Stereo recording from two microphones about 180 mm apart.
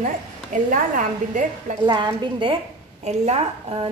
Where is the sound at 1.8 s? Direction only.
25° right (ahead or behind).